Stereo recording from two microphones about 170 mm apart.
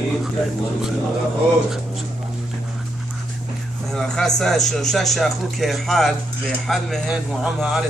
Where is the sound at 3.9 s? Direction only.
Centre (ahead or behind).